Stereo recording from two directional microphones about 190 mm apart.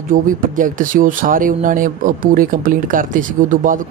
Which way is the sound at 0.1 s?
45° right (ahead or behind).